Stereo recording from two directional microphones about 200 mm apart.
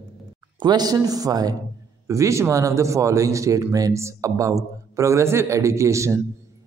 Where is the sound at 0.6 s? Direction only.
20° right (ahead or behind).